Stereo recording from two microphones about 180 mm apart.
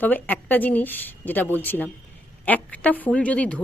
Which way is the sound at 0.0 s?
10° left (ahead or behind).